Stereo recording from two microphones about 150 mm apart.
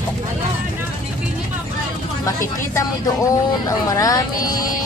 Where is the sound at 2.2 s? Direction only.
20° left (ahead or behind).